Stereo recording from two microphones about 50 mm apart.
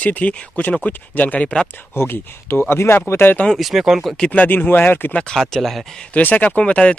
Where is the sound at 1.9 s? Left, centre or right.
Left.